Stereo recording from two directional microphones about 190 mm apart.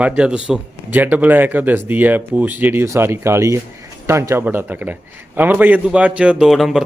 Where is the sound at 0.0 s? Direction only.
5° right (ahead or behind).